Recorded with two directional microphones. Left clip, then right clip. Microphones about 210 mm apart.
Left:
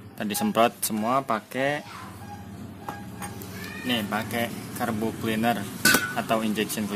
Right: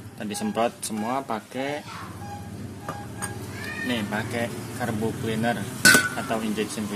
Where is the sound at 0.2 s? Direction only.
50° left (ahead or behind).